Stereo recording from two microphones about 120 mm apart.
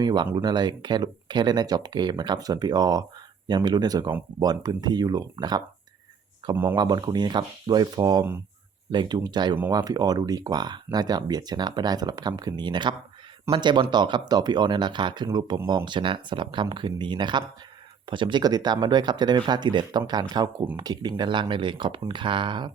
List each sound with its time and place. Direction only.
0.0 s speech: 35° right (ahead or behind)
6.7 s speech: 35° right (ahead or behind)